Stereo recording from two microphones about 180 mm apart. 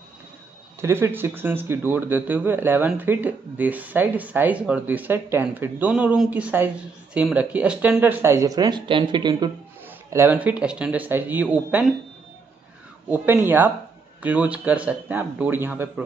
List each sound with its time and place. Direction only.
0.7 s speech: 15° right (ahead or behind)
13.1 s speech: 10° right (ahead or behind)